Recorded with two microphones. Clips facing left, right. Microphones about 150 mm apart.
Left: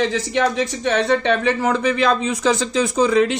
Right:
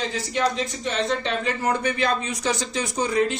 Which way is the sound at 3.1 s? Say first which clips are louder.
Left 6 dB; 90° left.